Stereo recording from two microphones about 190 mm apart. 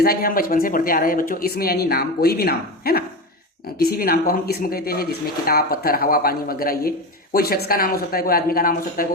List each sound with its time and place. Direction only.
0.0 s speech: 50° left (ahead or behind)